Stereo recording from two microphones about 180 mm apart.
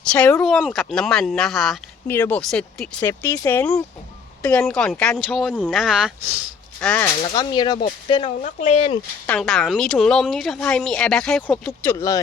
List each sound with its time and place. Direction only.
0.1 s speech: 10° left (ahead or behind)
2.0 s speech: 10° left (ahead or behind)
3.0 s speech: 15° left (ahead or behind); by 6.1 s 5° right (ahead or behind)
6.7 s speech: 10° left (ahead or behind)
7.2 s speech: 25° left (ahead or behind)
8.4 s speech: 40° left (ahead or behind)
9.2 s speech: 5° left (ahead or behind)
11.9 s speech: 20° left (ahead or behind)